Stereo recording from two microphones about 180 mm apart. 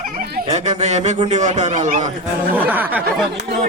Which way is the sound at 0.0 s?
55° right (ahead or behind).